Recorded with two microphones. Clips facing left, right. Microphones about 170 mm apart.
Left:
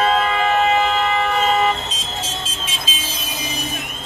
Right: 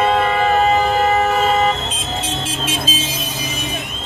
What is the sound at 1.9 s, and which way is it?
Music, 60° right (ahead or behind).